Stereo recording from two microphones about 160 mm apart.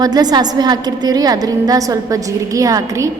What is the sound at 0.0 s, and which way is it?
A woman's voice, 25° right (ahead or behind).